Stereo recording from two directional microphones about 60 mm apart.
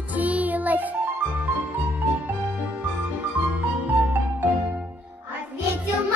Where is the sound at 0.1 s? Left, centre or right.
Right.